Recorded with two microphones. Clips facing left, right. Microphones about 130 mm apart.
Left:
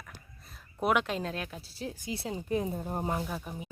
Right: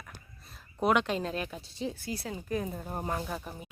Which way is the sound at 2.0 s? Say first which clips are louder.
Left 1 dB; 20° left (ahead or behind).